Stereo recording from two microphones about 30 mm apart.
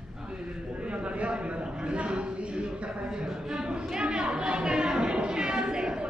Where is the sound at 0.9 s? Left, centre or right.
Right.